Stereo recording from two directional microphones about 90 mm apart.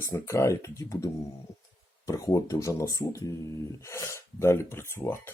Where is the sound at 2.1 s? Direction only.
35° left (ahead or behind).